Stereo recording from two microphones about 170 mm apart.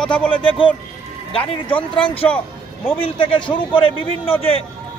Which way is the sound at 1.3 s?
30° left (ahead or behind).